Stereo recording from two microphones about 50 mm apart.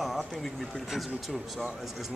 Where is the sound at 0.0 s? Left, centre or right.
Centre.